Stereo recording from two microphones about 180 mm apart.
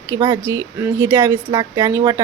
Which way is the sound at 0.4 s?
15° right (ahead or behind).